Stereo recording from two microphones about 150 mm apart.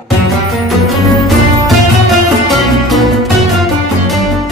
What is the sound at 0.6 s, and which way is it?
Music, centre (ahead or behind).